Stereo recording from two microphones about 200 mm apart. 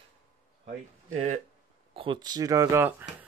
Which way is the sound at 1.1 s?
35° right (ahead or behind).